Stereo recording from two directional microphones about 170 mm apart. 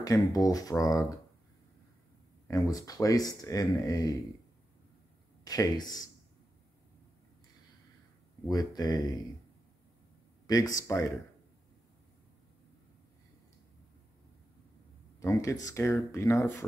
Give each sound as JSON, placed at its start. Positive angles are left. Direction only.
{"t": 0.0, "sound": "speech", "side_deg": 20}
{"t": 2.4, "sound": "speech", "side_deg": 20}
{"t": 5.4, "sound": "speech", "side_deg": 20}
{"t": 8.5, "sound": "speech", "side_deg": 20}
{"t": 10.4, "sound": "speech", "side_deg": 20}
{"t": 15.1, "sound": "speech", "side_deg": 20}